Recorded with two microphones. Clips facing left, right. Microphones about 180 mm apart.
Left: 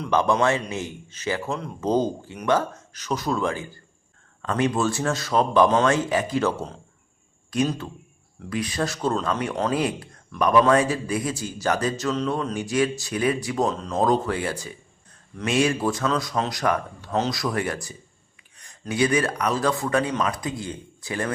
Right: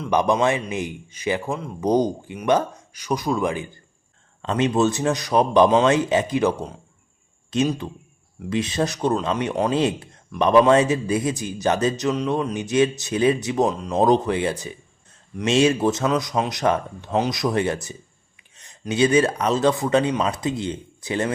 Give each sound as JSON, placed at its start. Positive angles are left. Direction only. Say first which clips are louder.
{"t": 0.1, "sound": "a man's voice", "louder": "right 1 dB", "side_deg": -15}